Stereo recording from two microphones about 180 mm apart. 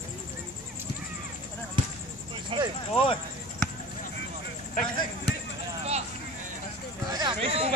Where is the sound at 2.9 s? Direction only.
30° left (ahead or behind).